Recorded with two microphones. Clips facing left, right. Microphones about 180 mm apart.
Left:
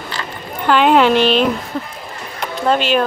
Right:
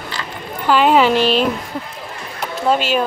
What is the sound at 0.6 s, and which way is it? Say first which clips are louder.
Speech: left 1 dB; 5° right (ahead or behind).